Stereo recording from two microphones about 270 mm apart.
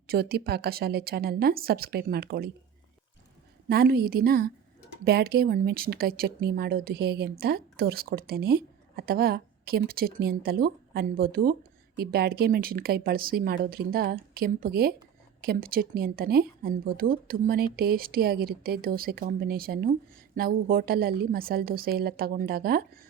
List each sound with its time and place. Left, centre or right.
0.1 s speech: right
3.7 s speech: right